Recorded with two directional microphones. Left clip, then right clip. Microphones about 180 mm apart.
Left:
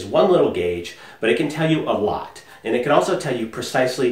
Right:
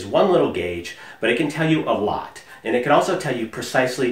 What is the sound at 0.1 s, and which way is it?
Speech, 15° right (ahead or behind).